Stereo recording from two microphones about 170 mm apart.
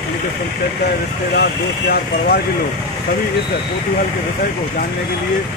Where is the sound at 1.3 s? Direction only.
70° left (ahead or behind).